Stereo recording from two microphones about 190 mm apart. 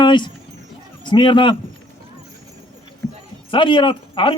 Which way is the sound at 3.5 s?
25° left (ahead or behind).